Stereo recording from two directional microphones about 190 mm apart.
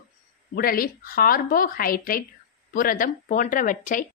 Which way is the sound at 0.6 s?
50° left (ahead or behind).